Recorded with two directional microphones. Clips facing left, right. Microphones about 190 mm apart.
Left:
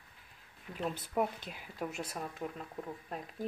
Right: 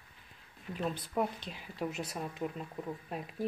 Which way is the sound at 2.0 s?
5° right (ahead or behind).